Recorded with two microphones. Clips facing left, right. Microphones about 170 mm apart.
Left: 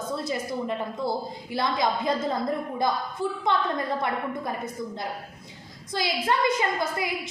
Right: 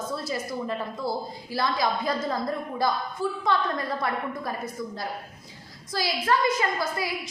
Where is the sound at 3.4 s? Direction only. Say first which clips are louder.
Left 1 dB; 20° left (ahead or behind).